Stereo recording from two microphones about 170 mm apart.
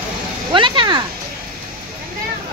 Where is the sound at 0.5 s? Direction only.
30° right (ahead or behind).